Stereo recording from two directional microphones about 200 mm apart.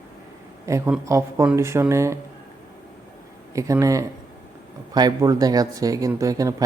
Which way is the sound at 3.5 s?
15° right (ahead or behind).